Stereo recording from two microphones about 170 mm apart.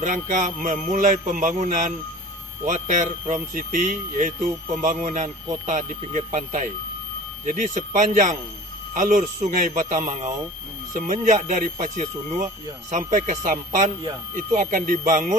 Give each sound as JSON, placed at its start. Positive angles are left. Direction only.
{"t": 0.0, "sound": "music", "side_deg": -50}